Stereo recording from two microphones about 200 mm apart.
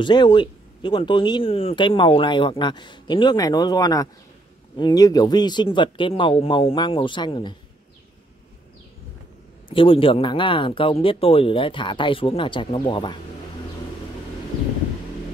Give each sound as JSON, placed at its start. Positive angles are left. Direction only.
{"t": 0.0, "sound": "speech", "side_deg": 20}
{"t": 9.7, "sound": "speech", "side_deg": 25}